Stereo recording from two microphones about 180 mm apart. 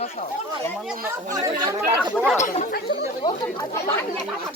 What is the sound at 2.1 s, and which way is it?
Speech, 5° right (ahead or behind).